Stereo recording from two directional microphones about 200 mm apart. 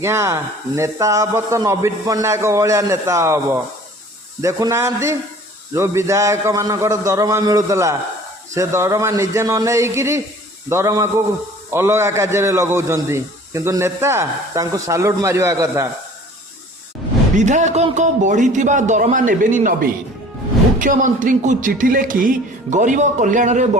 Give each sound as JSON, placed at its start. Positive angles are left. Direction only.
{"t": 0.0, "sound": "a man's voice", "side_deg": -15}
{"t": 17.3, "sound": "speech", "side_deg": -35}